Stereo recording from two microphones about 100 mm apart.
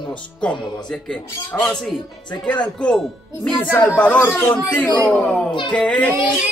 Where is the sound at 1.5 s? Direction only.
15° left (ahead or behind).